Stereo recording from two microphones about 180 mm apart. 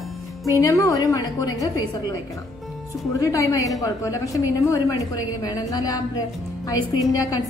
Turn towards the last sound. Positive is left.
turn(degrees=20)  # may be behind; listen again after turning